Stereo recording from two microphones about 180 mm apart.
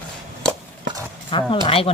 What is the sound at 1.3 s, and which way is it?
Speech, 25° left (ahead or behind).